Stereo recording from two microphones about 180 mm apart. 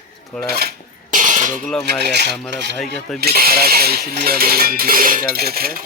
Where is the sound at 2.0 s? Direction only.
65° right (ahead or behind).